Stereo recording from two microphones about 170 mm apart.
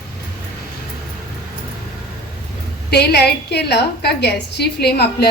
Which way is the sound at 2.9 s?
75° left (ahead or behind).